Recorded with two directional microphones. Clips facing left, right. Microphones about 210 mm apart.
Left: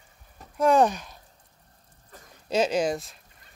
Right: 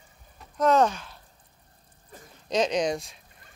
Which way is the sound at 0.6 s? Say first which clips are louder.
Left 1 dB; 10° left (ahead or behind).